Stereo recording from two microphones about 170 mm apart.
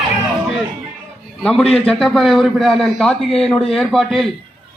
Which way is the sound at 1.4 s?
5° left (ahead or behind).